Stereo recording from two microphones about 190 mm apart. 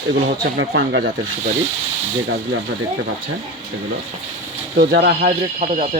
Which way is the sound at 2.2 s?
70° right (ahead or behind).